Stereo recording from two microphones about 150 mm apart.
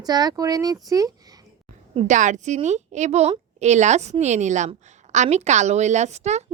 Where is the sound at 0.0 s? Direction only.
25° right (ahead or behind).